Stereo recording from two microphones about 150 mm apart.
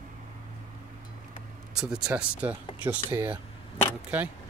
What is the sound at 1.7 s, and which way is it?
Speech, 5° right (ahead or behind).